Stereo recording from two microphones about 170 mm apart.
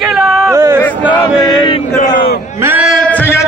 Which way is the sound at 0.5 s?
15° right (ahead or behind).